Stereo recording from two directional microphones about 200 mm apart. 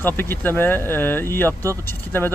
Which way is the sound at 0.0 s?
10° left (ahead or behind).